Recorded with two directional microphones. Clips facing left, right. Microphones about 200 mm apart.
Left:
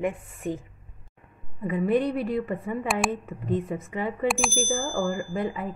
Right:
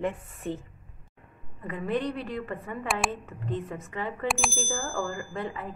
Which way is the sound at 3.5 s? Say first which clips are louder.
Left 6 dB; 15° left (ahead or behind).